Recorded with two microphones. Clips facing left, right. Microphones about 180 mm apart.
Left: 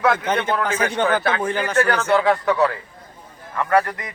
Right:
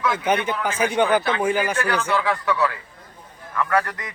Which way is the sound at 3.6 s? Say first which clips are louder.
Left 3 dB; 25° left (ahead or behind).